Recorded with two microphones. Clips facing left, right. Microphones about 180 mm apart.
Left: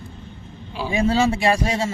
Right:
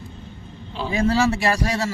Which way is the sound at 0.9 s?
25° left (ahead or behind).